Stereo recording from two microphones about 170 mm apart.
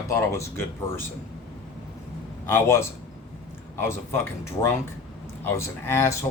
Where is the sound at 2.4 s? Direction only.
15° left (ahead or behind).